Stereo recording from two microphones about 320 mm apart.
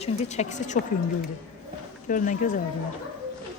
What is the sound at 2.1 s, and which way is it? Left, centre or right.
Speech, left.